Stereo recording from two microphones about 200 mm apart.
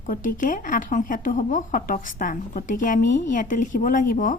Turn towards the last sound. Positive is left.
turn(degrees=40)  # may be behind; listen again after turning